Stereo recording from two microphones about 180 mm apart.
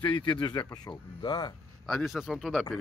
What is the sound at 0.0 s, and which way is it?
Speech, 25° left (ahead or behind).